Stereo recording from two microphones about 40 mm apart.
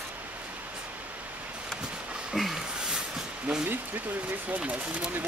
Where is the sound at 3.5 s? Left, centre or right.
Right.